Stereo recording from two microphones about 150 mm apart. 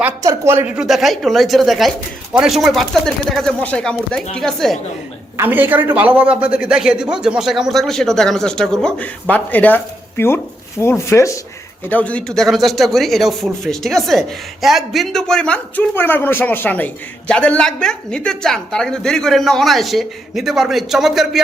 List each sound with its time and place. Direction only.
0.2 s speech: 20° right (ahead or behind)
0.9 s speech: centre (ahead or behind)
5.4 s speech: 10° right (ahead or behind)